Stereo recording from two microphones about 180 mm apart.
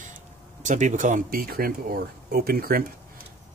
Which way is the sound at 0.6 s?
45° right (ahead or behind).